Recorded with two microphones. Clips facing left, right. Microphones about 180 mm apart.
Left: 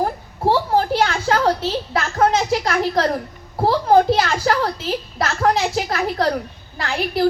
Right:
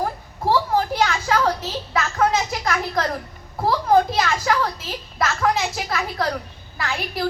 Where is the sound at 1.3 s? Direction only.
35° left (ahead or behind).